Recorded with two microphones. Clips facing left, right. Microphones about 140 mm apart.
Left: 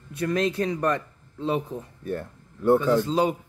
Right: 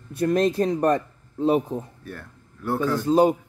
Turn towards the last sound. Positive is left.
turn(degrees=-50)  # may be behind; listen again after turning